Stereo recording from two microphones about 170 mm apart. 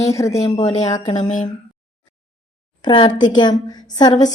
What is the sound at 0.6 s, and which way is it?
Speech, 40° left (ahead or behind).